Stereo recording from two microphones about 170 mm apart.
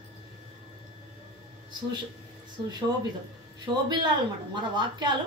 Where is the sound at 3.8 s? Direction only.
25° right (ahead or behind).